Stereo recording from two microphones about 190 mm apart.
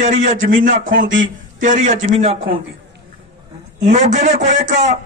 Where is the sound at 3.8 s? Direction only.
40° right (ahead or behind).